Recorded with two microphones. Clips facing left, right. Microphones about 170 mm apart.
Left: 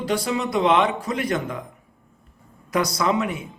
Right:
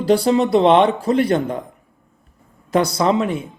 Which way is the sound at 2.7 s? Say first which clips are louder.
Right 5 dB; 30° right (ahead or behind).